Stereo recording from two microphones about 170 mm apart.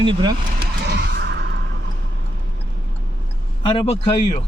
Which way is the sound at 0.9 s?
90° right.